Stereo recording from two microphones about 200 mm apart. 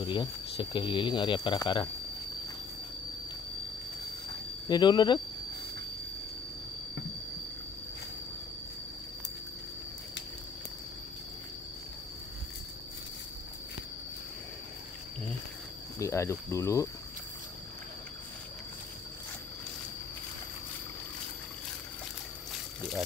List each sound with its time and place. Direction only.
0.0 s speech: 25° left (ahead or behind)
4.6 s speech: 20° left (ahead or behind)
16.0 s speech: 15° left (ahead or behind)
22.8 s a sound: centre (ahead or behind)